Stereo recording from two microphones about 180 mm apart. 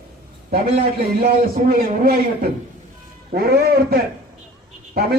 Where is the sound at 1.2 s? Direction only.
55° right (ahead or behind).